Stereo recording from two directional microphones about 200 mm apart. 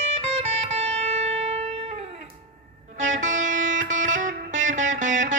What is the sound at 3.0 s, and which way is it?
Music, 40° right (ahead or behind).